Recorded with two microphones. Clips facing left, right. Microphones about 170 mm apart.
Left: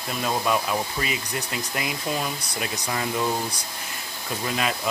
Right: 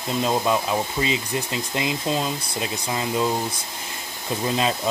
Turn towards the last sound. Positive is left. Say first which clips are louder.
# right 4 dB
turn(degrees=-25)  # may be behind; listen again after turning